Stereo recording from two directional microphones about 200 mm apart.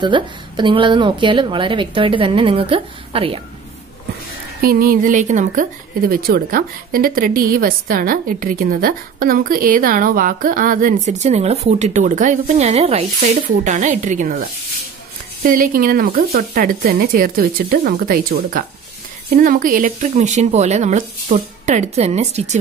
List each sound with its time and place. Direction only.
0.0 s speech: 25° right (ahead or behind)
4.6 s a woman's voice: 50° right (ahead or behind)